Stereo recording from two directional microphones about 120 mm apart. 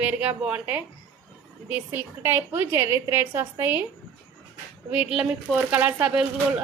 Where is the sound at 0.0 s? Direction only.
15° right (ahead or behind).